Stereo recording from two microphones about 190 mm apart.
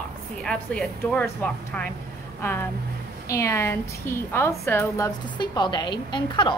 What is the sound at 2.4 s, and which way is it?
A woman's voice, 10° left (ahead or behind).